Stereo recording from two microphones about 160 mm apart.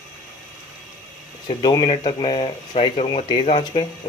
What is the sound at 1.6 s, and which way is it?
Speech, 30° left (ahead or behind).